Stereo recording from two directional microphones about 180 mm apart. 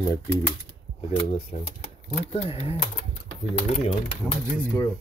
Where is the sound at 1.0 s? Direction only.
35° left (ahead or behind).